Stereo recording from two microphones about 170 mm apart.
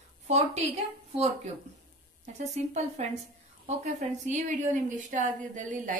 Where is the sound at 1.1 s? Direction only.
40° right (ahead or behind).